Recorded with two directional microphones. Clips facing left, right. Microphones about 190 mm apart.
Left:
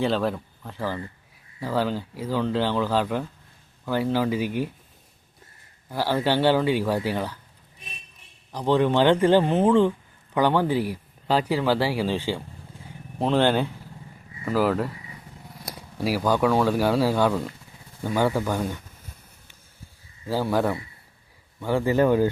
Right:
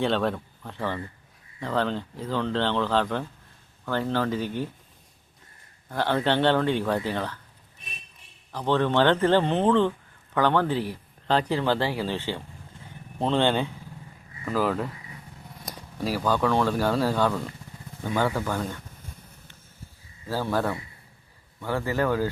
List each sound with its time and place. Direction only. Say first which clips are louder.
0.0 s speech: left 1 dB; centre (ahead or behind)
5.9 s speech: left 1 dB; 5° left (ahead or behind)
8.5 s speech: left 2 dB; 15° left (ahead or behind)
20.2 s a man's voice: left 3 dB; 15° left (ahead or behind)